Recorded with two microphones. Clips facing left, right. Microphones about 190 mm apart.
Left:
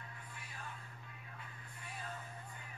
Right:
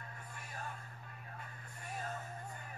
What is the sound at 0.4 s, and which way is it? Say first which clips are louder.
Music: right 5 dB; 45° right (ahead or behind).